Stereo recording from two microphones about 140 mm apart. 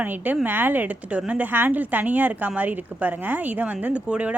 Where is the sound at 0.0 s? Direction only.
10° right (ahead or behind).